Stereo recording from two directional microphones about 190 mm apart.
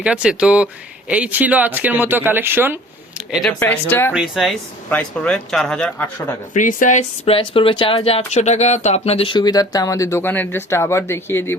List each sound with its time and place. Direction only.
0.0 s speech: 5° right (ahead or behind)
3.6 s speech: 10° left (ahead or behind)
4.1 s speech: centre (ahead or behind)
6.5 s speech: 45° left (ahead or behind); by 11.5 s 10° left (ahead or behind)